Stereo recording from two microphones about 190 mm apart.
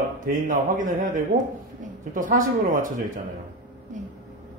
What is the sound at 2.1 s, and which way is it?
Speech, 45° right (ahead or behind).